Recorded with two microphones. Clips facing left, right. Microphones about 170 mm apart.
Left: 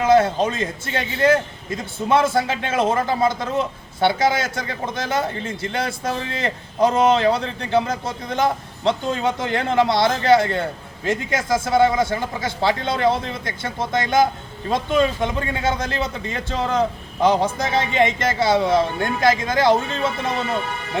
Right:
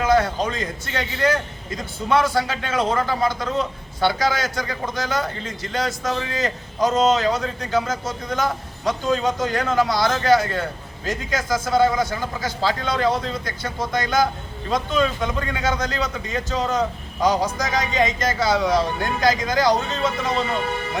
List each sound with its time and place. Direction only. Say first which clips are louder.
0.0 s a man's voice: left 3 dB; 25° left (ahead or behind)